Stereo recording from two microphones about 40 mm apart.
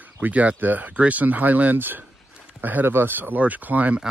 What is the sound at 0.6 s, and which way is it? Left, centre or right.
Speech, right.